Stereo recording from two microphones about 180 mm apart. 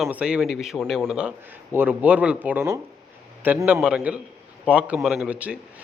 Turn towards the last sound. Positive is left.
turn(degrees=-10)  # may be behind; listen again after turning